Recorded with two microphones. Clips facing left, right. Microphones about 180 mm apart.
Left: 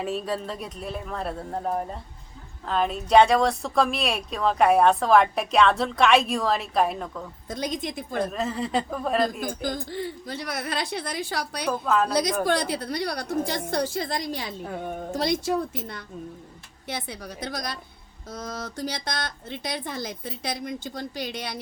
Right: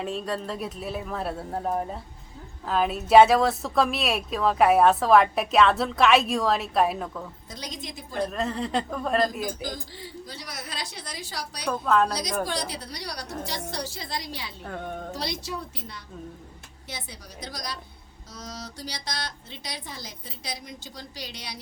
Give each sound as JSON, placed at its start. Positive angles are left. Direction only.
{"t": 0.0, "sound": "speech", "side_deg": 5}
{"t": 7.5, "sound": "a woman's voice", "side_deg": 55}
{"t": 8.3, "sound": "speech", "side_deg": 0}
{"t": 9.4, "sound": "a woman's voice", "side_deg": 55}
{"t": 11.6, "sound": "speech", "side_deg": 5}
{"t": 12.5, "sound": "a woman's voice", "side_deg": 55}
{"t": 14.6, "sound": "a woman's voice", "side_deg": 10}
{"t": 15.1, "sound": "a woman's voice", "side_deg": 50}